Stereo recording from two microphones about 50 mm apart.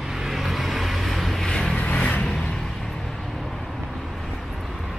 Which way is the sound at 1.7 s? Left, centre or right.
Left.